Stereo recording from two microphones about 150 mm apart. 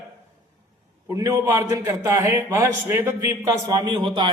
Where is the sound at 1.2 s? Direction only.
20° right (ahead or behind).